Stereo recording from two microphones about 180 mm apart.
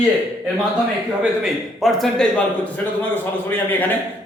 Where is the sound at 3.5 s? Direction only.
10° left (ahead or behind).